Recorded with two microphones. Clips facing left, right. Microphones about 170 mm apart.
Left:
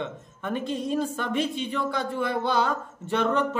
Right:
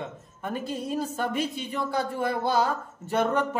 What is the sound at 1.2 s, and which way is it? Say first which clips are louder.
Speech: left 1 dB; 40° right (ahead or behind).